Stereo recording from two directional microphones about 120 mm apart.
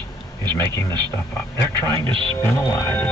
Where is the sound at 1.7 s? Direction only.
20° left (ahead or behind).